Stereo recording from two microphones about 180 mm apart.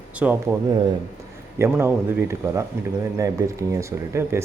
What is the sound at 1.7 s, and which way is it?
Speech, 15° right (ahead or behind).